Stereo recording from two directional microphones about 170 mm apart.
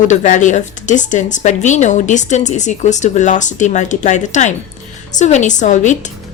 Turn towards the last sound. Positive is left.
turn(degrees=45)  # may be behind; listen again after turning